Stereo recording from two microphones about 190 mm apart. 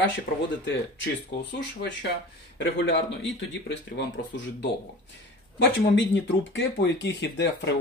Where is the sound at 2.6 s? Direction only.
70° left (ahead or behind).